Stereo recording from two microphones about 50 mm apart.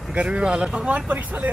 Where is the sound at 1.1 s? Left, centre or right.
Right.